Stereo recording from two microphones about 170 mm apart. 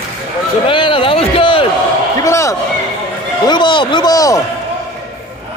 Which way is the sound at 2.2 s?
20° left (ahead or behind).